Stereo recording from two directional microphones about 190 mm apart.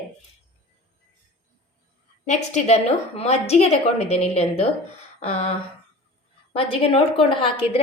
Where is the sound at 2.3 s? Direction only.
40° left (ahead or behind).